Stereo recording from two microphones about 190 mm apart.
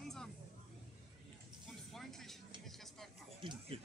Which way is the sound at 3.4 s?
25° right (ahead or behind).